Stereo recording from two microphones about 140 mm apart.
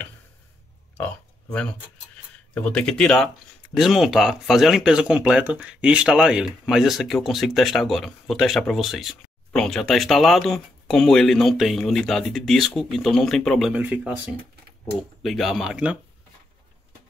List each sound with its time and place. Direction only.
1.0 s a sound: 10° left (ahead or behind)
2.5 s speech: 10° left (ahead or behind); by 14.2 s 10° right (ahead or behind)
15.2 s speech: centre (ahead or behind)